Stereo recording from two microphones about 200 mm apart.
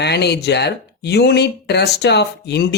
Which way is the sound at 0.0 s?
55° left (ahead or behind).